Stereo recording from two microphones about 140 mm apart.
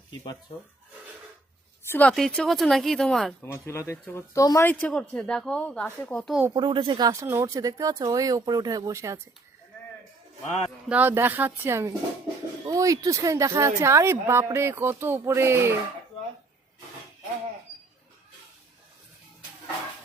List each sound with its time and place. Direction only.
1.9 s speech: 10° left (ahead or behind)
3.4 s speech: 20° left (ahead or behind)
6.5 s speech: 35° right (ahead or behind)
10.4 s speech: 55° left (ahead or behind)
10.8 s speech: 10° right (ahead or behind)